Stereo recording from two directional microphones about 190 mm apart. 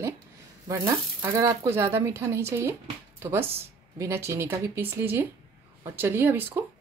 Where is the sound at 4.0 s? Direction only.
15° right (ahead or behind).